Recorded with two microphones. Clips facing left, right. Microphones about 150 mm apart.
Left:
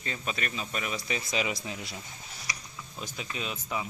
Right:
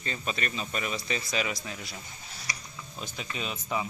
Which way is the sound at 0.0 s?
5° left (ahead or behind).